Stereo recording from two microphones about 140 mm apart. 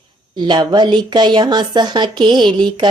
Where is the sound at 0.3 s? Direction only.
35° right (ahead or behind).